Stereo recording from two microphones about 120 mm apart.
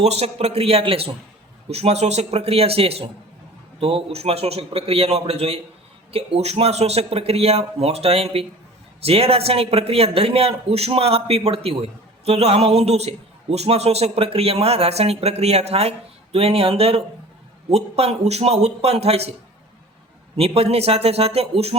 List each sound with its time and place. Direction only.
0.0 s a man's voice: 60° right (ahead or behind)
20.3 s a man's voice: 55° right (ahead or behind)